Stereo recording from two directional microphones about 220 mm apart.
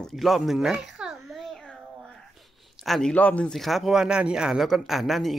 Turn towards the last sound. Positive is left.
turn(degrees=0)  # may be behind; listen again after turning